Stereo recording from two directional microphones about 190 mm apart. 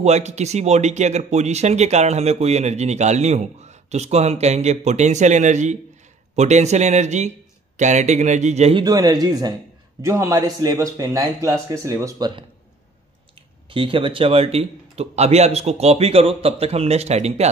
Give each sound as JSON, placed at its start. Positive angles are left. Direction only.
{"t": 0.0, "sound": "speech", "side_deg": -35}
{"t": 8.8, "sound": "a man's voice", "side_deg": -20}
{"t": 13.7, "sound": "speech", "side_deg": -25}